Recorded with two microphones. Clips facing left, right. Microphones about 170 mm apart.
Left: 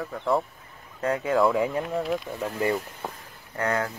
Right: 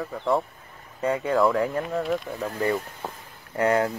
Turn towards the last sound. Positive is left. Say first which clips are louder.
# right 5 dB
turn(degrees=-25)  # may be behind; listen again after turning